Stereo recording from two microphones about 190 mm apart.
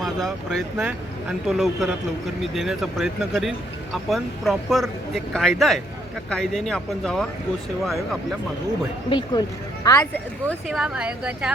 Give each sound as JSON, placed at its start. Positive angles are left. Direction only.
{"t": 0.0, "sound": "speech", "side_deg": 0}
{"t": 9.0, "sound": "speech", "side_deg": 25}
{"t": 10.7, "sound": "speech", "side_deg": -5}